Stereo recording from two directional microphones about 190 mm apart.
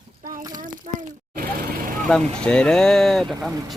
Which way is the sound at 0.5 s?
45° right (ahead or behind).